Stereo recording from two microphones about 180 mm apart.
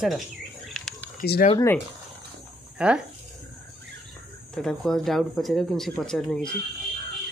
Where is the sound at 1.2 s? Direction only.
55° left (ahead or behind).